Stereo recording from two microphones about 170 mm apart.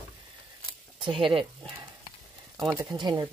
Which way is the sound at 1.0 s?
30° right (ahead or behind).